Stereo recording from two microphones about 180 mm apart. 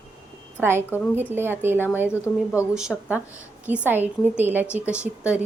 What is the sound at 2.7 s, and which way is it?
A woman's voice, 5° right (ahead or behind).